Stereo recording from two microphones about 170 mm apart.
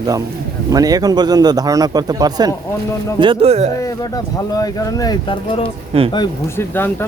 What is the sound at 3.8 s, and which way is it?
Speech, 20° left (ahead or behind).